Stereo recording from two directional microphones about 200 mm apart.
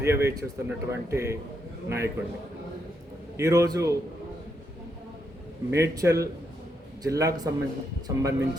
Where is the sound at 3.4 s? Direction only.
15° right (ahead or behind).